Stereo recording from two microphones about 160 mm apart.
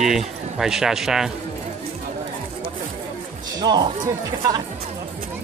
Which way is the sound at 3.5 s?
25° right (ahead or behind).